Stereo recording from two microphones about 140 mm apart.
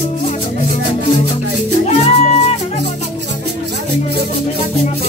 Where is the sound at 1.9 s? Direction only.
50° left (ahead or behind).